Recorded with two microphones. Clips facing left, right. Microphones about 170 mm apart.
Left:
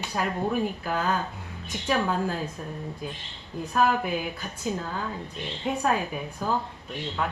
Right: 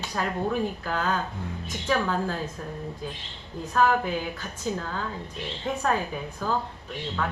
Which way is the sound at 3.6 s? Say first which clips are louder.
Right 1 dB; 10° left (ahead or behind).